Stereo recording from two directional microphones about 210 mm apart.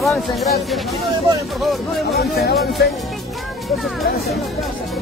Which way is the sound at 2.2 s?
50° left (ahead or behind).